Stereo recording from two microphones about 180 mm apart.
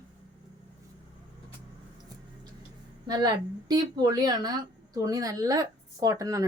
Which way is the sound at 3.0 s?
20° right (ahead or behind).